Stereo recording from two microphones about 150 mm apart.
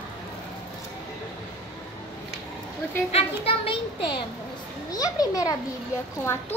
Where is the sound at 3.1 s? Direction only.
40° left (ahead or behind).